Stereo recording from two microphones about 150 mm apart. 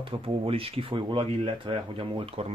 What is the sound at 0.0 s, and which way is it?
Speech, 35° right (ahead or behind).